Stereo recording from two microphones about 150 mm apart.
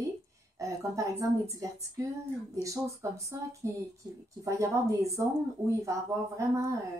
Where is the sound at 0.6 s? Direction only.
20° right (ahead or behind).